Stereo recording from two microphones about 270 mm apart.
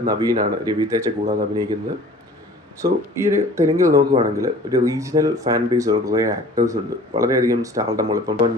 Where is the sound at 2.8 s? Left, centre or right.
Centre.